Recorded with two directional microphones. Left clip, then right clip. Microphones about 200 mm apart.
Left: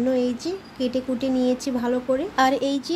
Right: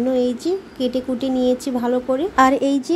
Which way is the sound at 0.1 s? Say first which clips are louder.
Right 4 dB; 10° right (ahead or behind).